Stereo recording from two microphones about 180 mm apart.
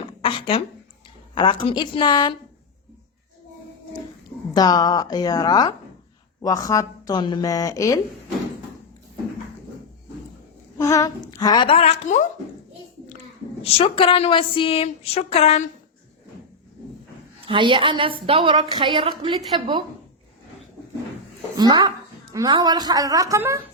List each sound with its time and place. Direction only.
0.2 s a woman's voice: 30° left (ahead or behind)
4.5 s speech: 20° left (ahead or behind)
10.8 s speech: 20° left (ahead or behind); by 12.3 s 45° left (ahead or behind)
13.6 s a woman's voice: 30° left (ahead or behind)
17.4 s speech: 30° right (ahead or behind)
21.6 s speech: 25° right (ahead or behind)